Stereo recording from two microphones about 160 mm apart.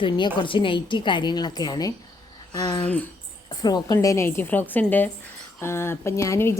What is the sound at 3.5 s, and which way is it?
A woman's voice, 25° left (ahead or behind).